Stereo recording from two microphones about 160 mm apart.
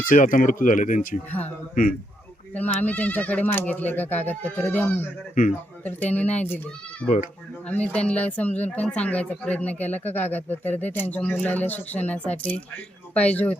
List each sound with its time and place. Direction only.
0.1 s speech: 55° left (ahead or behind)
2.5 s speech: 10° left (ahead or behind)
5.3 s speech: 55° left (ahead or behind)
5.8 s speech: 10° left (ahead or behind)